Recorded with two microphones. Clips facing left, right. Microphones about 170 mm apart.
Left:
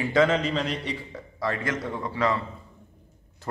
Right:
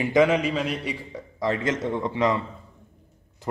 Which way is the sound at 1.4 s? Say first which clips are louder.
Right 4 dB; 20° right (ahead or behind).